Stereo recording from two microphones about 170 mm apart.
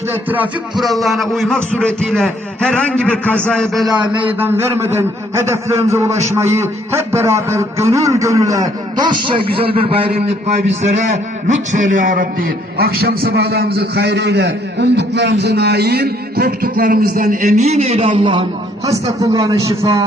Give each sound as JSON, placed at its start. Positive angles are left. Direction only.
{"t": 0.3, "sound": "a man's voice", "side_deg": -10}
{"t": 18.9, "sound": "speech", "side_deg": -20}